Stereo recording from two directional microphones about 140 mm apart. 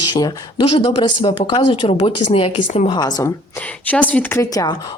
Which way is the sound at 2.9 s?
30° left (ahead or behind).